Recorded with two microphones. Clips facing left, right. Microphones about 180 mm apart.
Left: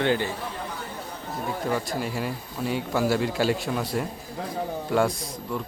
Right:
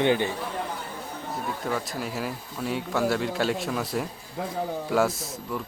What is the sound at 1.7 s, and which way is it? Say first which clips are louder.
Speech: left 3 dB; centre (ahead or behind).